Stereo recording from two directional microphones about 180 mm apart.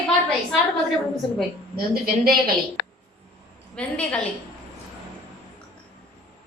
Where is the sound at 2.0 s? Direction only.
55° right (ahead or behind).